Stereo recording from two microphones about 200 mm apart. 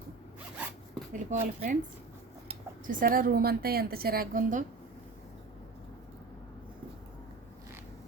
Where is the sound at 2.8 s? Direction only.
45° right (ahead or behind).